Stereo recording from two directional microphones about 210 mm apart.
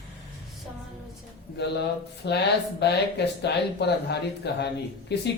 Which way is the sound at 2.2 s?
55° left (ahead or behind).